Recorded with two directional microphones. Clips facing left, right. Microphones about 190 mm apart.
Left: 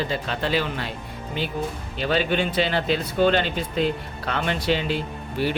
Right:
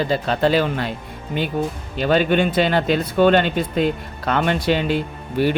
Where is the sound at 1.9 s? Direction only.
50° right (ahead or behind).